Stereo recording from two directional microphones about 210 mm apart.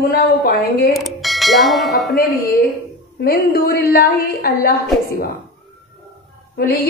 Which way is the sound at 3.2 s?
45° left (ahead or behind).